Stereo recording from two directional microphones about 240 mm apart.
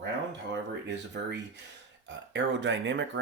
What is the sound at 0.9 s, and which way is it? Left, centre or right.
Speech, right.